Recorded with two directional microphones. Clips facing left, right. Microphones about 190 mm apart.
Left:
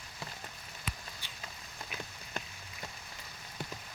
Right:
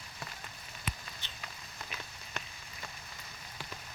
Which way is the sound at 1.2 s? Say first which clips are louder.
Even; 10° left (ahead or behind).